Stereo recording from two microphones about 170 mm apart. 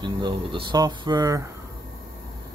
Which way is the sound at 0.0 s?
30° right (ahead or behind).